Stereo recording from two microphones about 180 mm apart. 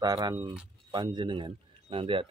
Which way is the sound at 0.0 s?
20° right (ahead or behind).